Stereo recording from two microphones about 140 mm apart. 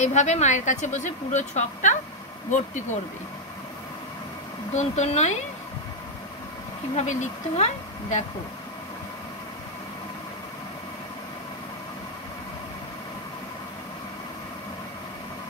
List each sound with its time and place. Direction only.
0.0 s a woman's voice: 55° left (ahead or behind)
4.7 s speech: 50° left (ahead or behind)
7.0 s speech: 55° left (ahead or behind)